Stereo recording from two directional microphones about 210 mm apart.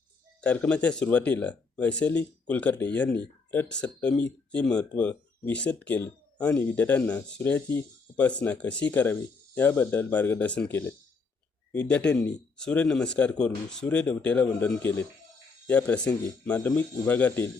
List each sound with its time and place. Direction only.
0.4 s speech: 5° left (ahead or behind)